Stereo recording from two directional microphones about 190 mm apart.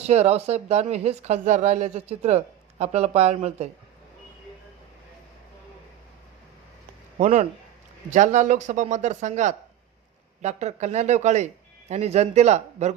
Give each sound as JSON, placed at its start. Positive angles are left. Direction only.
{"t": 0.0, "sound": "speech", "side_deg": -35}
{"t": 7.2, "sound": "speech", "side_deg": -40}